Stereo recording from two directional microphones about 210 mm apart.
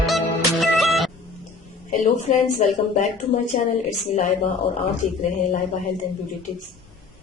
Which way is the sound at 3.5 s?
30° left (ahead or behind).